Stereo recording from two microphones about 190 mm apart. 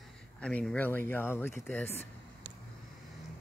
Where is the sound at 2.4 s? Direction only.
55° right (ahead or behind).